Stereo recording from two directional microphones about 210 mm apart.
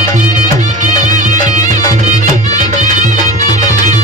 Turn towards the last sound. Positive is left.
turn(degrees=-35)  # may be behind; listen again after turning